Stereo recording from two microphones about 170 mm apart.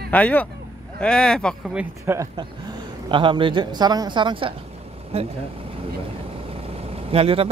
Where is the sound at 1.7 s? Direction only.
15° right (ahead or behind).